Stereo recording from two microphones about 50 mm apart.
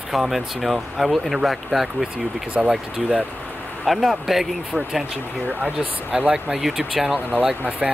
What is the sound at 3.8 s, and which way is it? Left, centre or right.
Speech, centre.